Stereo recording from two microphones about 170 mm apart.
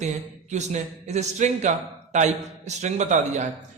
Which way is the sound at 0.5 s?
45° right (ahead or behind).